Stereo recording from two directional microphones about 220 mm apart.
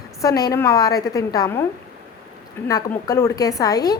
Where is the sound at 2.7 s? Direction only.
15° left (ahead or behind).